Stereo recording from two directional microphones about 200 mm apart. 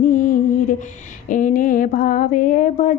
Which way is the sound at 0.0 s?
45° left (ahead or behind).